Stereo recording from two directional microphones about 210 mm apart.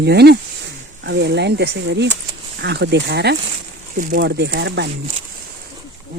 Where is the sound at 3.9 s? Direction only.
40° right (ahead or behind).